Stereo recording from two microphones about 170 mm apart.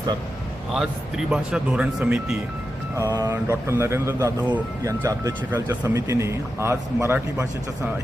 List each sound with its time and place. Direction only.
0.7 s speech: 5° right (ahead or behind)
3.0 s mantra: 20° right (ahead or behind)
3.3 s speech: 15° right (ahead or behind)